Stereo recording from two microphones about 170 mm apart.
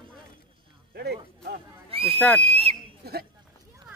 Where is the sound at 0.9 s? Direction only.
65° right (ahead or behind).